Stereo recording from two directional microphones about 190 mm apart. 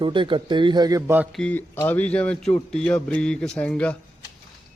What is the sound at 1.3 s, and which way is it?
A man's voice, 5° left (ahead or behind).